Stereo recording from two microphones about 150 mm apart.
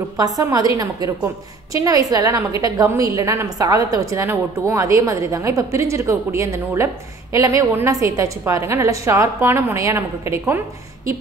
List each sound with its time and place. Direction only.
0.2 s a woman's voice: 25° right (ahead or behind)